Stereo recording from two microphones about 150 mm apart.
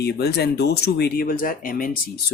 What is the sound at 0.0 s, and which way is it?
Speech, 90° left.